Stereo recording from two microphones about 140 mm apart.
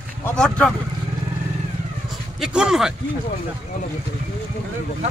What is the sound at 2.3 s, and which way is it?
Speech, 5° right (ahead or behind).